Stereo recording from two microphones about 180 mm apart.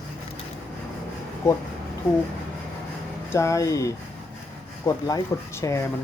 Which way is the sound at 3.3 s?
15° left (ahead or behind).